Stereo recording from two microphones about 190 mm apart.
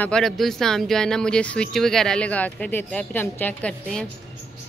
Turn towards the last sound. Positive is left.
turn(degrees=5)  # may be behind; listen again after turning